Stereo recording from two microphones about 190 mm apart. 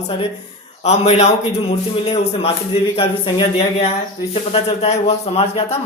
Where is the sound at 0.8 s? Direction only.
35° left (ahead or behind).